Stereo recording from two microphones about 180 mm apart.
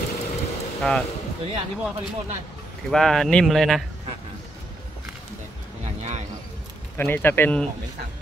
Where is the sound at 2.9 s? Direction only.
Centre (ahead or behind).